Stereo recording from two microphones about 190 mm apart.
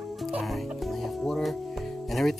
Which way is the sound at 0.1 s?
Centre (ahead or behind).